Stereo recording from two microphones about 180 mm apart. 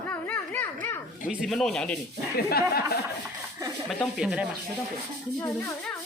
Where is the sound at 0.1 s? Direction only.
10° left (ahead or behind).